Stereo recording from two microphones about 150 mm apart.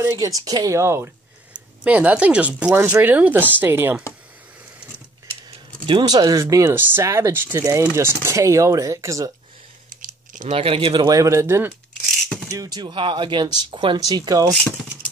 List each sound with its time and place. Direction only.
0.0 s speech: 20° right (ahead or behind)
5.9 s speech: 30° right (ahead or behind)
9.8 s a sound: 60° right (ahead or behind)
10.6 s speech: 40° right (ahead or behind)
14.5 s speech: 5° left (ahead or behind)